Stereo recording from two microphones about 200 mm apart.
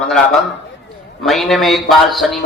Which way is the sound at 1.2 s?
Centre (ahead or behind).